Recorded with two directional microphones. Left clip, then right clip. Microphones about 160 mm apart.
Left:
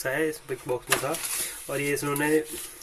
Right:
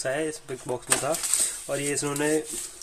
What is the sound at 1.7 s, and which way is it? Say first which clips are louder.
Speech: left 2 dB; 35° right (ahead or behind).